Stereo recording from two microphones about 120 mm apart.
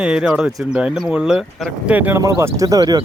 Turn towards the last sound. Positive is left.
turn(degrees=-35)  # may be behind; listen again after turning